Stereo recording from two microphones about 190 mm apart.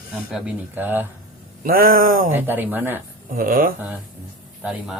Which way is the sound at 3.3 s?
45° right (ahead or behind).